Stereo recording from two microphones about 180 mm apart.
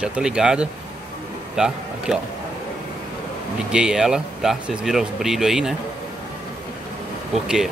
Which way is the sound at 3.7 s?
5° right (ahead or behind).